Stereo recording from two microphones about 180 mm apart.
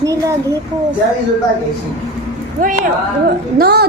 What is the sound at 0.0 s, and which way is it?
Speech, 20° right (ahead or behind).